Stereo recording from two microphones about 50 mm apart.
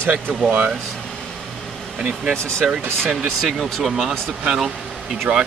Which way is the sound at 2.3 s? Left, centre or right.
Centre.